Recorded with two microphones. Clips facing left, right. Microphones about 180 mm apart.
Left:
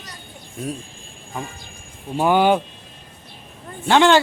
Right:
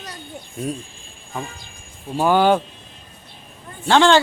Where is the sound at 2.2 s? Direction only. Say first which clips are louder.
Even; 15° left (ahead or behind).